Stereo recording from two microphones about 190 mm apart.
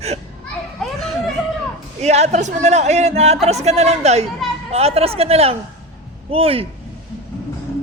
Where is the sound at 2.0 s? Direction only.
35° right (ahead or behind).